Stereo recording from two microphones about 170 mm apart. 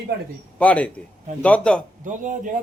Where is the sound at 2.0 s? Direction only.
50° right (ahead or behind).